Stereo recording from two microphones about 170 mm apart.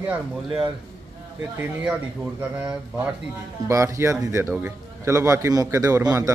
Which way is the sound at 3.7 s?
15° right (ahead or behind).